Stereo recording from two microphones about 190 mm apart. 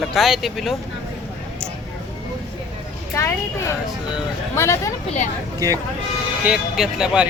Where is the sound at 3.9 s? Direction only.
5° right (ahead or behind).